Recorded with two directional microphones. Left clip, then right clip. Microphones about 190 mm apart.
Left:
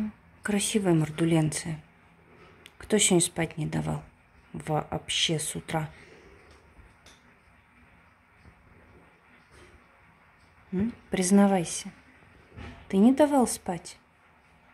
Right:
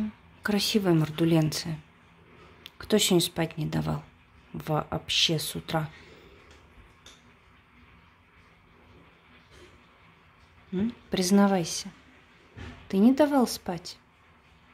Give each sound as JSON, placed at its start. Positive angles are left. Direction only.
{"t": 0.4, "sound": "speech", "side_deg": -5}
{"t": 2.8, "sound": "speech", "side_deg": -5}
{"t": 10.7, "sound": "speech", "side_deg": -5}